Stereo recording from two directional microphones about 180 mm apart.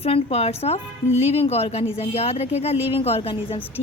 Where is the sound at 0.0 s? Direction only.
35° left (ahead or behind).